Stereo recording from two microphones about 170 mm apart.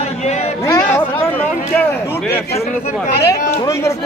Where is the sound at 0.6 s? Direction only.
15° left (ahead or behind).